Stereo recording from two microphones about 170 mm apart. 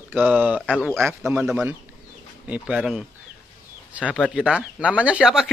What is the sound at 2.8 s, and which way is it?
A man's voice, centre (ahead or behind).